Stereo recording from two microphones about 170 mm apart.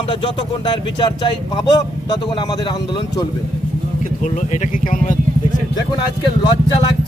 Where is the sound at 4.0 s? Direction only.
45° left (ahead or behind).